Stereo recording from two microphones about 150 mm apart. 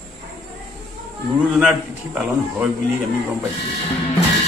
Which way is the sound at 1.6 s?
5° right (ahead or behind).